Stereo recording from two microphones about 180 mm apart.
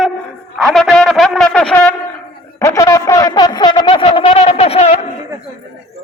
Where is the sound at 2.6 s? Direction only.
20° left (ahead or behind); by 4.9 s 35° left (ahead or behind).